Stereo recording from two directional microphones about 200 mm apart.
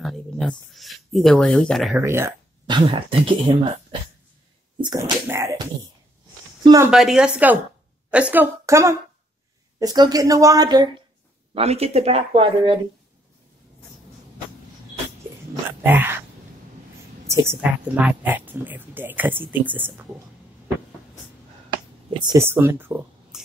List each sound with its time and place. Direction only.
0.0 s speech: centre (ahead or behind)
2.0 s speech: 15° right (ahead or behind)
4.7 s speech: 20° right (ahead or behind)
6.6 s speech: 20° right (ahead or behind)
6.9 s speech: centre (ahead or behind); by 10.9 s 20° right (ahead or behind)
11.5 s speech: 30° right (ahead or behind)
15.8 s speech: 10° right (ahead or behind)
17.3 s speech: 10° right (ahead or behind)
22.2 s speech: 15° right (ahead or behind)